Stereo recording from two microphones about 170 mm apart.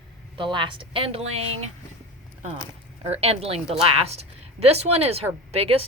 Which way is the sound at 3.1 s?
35° right (ahead or behind).